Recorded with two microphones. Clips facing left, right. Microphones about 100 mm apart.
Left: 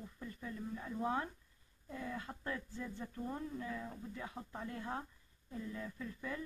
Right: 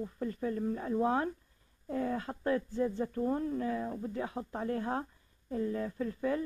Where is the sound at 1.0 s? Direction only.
30° right (ahead or behind).